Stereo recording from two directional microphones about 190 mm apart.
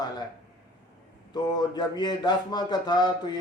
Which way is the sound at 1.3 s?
20° left (ahead or behind).